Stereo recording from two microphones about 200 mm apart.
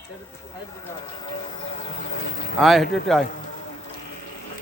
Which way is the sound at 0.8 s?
20° left (ahead or behind).